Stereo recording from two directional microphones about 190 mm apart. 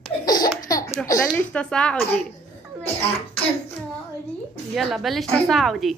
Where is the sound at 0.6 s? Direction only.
20° left (ahead or behind).